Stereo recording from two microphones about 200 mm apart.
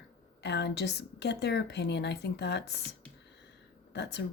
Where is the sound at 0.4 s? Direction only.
55° left (ahead or behind).